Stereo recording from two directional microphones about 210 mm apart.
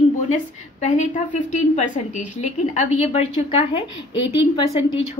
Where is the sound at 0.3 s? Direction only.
35° left (ahead or behind).